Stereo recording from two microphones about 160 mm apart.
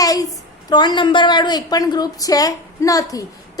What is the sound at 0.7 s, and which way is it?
A woman's voice, 30° left (ahead or behind).